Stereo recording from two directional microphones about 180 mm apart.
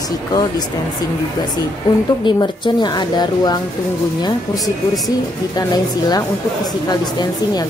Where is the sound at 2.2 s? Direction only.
25° left (ahead or behind).